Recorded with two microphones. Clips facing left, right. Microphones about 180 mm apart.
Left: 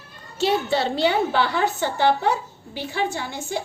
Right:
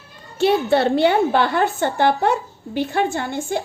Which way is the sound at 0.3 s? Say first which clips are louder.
Right 5 dB; 55° right (ahead or behind).